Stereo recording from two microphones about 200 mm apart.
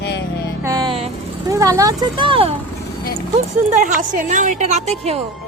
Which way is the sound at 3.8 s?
40° right (ahead or behind).